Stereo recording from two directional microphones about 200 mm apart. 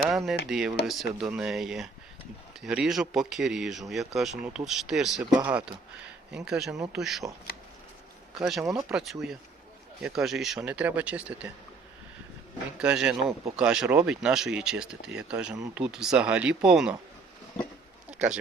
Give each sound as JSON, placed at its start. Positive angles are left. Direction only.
{"t": 0.4, "sound": "speech", "side_deg": 0}
{"t": 8.4, "sound": "speech", "side_deg": 0}
{"t": 8.6, "sound": "speech", "side_deg": -15}
{"t": 8.9, "sound": "speech", "side_deg": 0}
{"t": 12.8, "sound": "speech", "side_deg": -5}
{"t": 18.1, "sound": "a sound", "side_deg": -5}